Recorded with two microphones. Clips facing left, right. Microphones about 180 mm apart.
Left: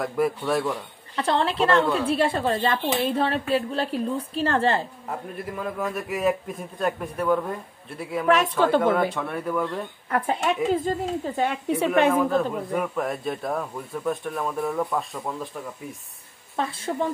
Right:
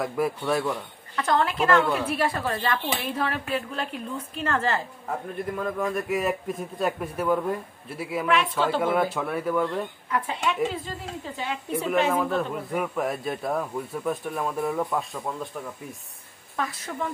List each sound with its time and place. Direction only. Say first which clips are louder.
0.0 s speech: left 2 dB; centre (ahead or behind)
1.1 s speech: left 1 dB; 30° left (ahead or behind)
5.8 s speech: right 1 dB; centre (ahead or behind)
8.3 s speech: left 5 dB; 45° left (ahead or behind)
8.8 s speech: left 2 dB; 5° right (ahead or behind)
10.0 s speech: left 6 dB; 50° left (ahead or behind)
11.7 s a woman's voice: left 3 dB; 75° left (ahead or behind)
12.7 s speech: right 1 dB; centre (ahead or behind)
16.5 s speech: left 4 dB; 30° left (ahead or behind)